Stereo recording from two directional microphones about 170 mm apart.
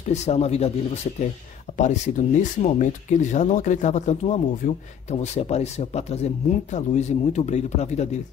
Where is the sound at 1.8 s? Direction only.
45° left (ahead or behind).